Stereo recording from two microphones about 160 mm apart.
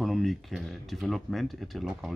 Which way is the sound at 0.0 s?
Centre (ahead or behind).